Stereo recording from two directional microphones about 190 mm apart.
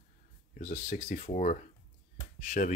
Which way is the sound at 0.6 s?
45° left (ahead or behind).